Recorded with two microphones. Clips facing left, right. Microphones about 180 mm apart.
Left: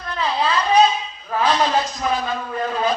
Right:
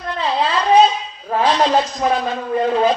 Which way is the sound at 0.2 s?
30° right (ahead or behind).